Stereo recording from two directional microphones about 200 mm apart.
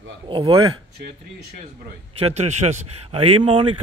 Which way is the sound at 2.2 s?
30° right (ahead or behind).